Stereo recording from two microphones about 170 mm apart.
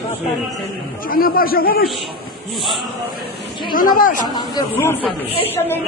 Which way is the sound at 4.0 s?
50° left (ahead or behind).